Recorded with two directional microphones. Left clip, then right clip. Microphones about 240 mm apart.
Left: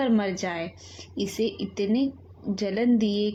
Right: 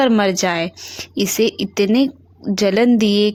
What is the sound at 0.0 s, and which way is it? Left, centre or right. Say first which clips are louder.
Speech: right 11 dB; right.